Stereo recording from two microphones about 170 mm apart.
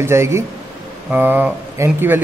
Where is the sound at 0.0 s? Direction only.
15° right (ahead or behind).